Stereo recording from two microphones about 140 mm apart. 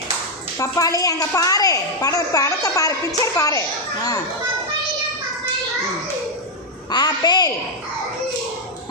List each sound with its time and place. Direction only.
0.6 s a woman's voice: 25° left (ahead or behind)
6.9 s a woman's voice: 30° left (ahead or behind)